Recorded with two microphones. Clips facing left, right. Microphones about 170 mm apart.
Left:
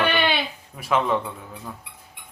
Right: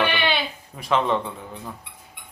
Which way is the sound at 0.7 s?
5° left (ahead or behind).